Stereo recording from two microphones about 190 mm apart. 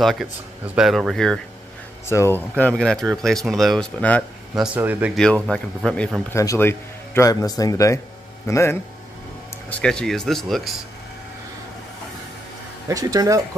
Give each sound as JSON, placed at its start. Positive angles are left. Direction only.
{"t": 0.0, "sound": "speech", "side_deg": 0}
{"t": 2.0, "sound": "speech", "side_deg": 15}
{"t": 4.7, "sound": "speech", "side_deg": -10}
{"t": 5.1, "sound": "speech", "side_deg": 5}
{"t": 6.3, "sound": "a man's voice", "side_deg": 15}
{"t": 12.8, "sound": "speech", "side_deg": -20}